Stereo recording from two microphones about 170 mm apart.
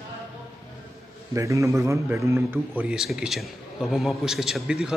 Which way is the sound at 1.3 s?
20° right (ahead or behind).